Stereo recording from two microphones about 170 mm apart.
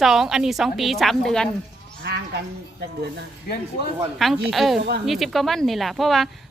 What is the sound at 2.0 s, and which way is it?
Sheep, 80° right.